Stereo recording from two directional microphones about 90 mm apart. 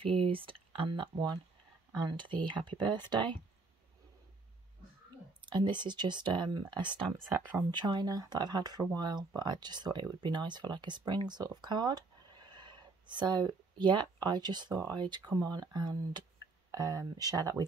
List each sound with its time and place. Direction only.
0.0 s speech: 80° right
2.0 s speech: 55° right (ahead or behind)
5.4 s speech: 60° right (ahead or behind)
16.7 s speech: 45° right (ahead or behind)